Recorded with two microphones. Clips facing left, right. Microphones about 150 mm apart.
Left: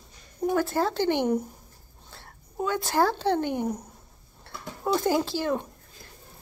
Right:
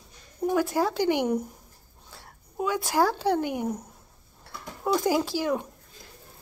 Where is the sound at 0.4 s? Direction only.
10° right (ahead or behind).